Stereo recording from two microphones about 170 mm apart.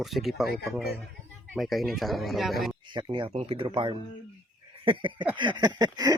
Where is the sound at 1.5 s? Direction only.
Centre (ahead or behind).